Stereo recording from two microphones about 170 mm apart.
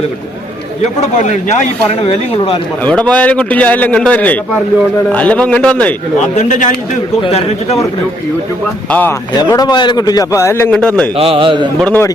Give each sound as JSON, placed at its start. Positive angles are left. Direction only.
{"t": 0.8, "sound": "speech", "side_deg": 45}
{"t": 2.8, "sound": "a man's voice", "side_deg": 5}
{"t": 6.3, "sound": "speech", "side_deg": 45}
{"t": 7.2, "sound": "a man's voice", "side_deg": 35}
{"t": 8.9, "sound": "a man's voice", "side_deg": 10}
{"t": 9.5, "sound": "a man's voice", "side_deg": 20}
{"t": 11.2, "sound": "a man's voice", "side_deg": -30}
{"t": 11.8, "sound": "a man's voice", "side_deg": 10}